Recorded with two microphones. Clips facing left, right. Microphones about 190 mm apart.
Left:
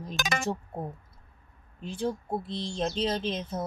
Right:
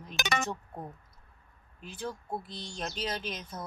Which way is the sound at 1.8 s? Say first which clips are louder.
Left 8 dB; 25° left (ahead or behind).